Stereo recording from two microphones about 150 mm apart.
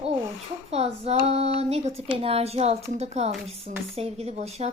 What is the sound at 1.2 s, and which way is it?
Speech, 45° right (ahead or behind).